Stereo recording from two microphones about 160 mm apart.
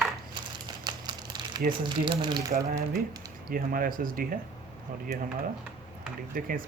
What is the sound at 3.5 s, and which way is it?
Speech, 60° right (ahead or behind).